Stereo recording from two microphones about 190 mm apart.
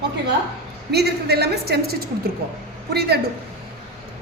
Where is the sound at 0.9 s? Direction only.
55° right (ahead or behind).